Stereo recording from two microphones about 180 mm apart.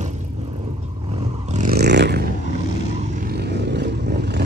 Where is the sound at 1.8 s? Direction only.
70° right (ahead or behind).